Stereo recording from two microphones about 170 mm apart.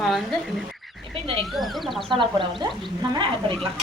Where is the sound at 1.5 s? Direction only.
Centre (ahead or behind).